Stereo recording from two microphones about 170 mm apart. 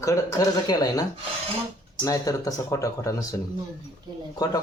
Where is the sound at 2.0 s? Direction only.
20° left (ahead or behind).